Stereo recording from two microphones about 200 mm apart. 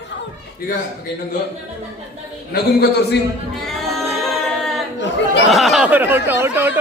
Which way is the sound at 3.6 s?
Centre (ahead or behind).